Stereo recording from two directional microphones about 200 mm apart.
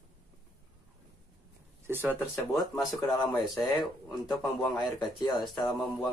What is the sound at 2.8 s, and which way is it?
Speech, centre (ahead or behind).